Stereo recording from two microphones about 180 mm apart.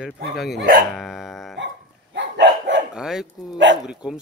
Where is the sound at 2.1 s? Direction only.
75° right (ahead or behind).